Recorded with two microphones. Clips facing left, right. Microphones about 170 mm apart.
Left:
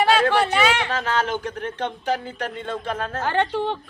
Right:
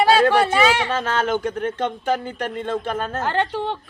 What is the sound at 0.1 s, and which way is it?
Speech, 35° right (ahead or behind).